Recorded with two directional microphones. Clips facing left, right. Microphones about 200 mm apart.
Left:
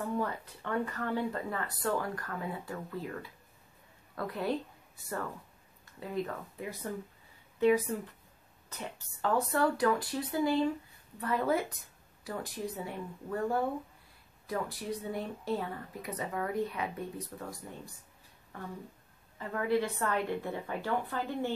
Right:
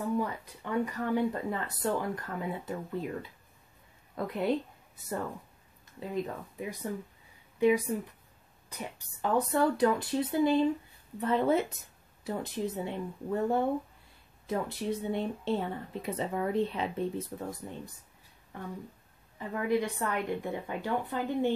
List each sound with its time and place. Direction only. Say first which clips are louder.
0.2 s a woman's voice: right 1 dB; 15° right (ahead or behind)
19.3 s speech: right 1 dB; 15° right (ahead or behind)